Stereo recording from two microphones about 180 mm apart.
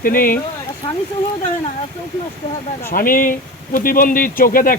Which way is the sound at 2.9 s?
50° left (ahead or behind).